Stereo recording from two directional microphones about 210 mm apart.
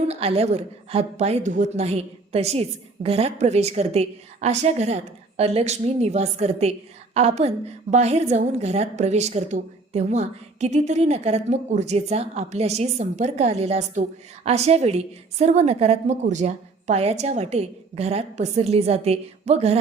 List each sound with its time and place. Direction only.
0.1 s a woman's voice: 30° right (ahead or behind)